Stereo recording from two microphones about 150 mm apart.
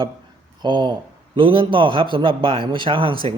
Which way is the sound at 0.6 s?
30° right (ahead or behind).